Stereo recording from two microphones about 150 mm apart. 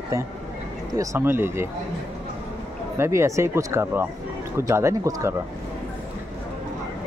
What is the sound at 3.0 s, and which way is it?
Speech, 20° right (ahead or behind).